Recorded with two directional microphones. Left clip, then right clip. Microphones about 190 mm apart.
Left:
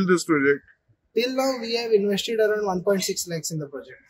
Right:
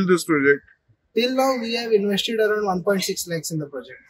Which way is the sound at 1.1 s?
15° left (ahead or behind).